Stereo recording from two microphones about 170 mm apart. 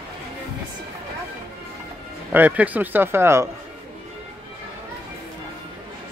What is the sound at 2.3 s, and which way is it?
Speech, 10° right (ahead or behind).